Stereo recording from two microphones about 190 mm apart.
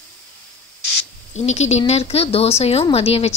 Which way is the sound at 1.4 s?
35° left (ahead or behind).